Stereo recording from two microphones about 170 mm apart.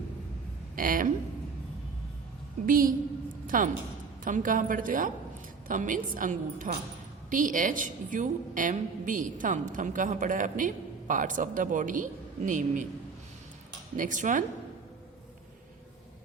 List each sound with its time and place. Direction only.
0.8 s speech: 55° right (ahead or behind)
2.6 s a woman's voice: 55° right (ahead or behind)
3.4 s a sound: 50° right (ahead or behind)
4.2 s a woman's voice: 50° right (ahead or behind)
13.9 s a woman's voice: 50° right (ahead or behind)